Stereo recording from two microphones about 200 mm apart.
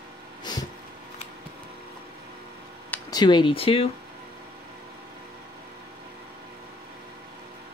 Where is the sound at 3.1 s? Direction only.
20° left (ahead or behind).